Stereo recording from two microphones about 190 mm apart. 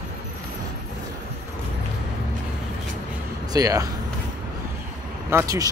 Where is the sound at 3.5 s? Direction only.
20° right (ahead or behind).